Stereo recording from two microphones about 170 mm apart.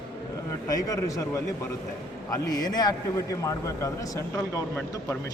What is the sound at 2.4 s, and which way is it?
A man's voice, 25° left (ahead or behind).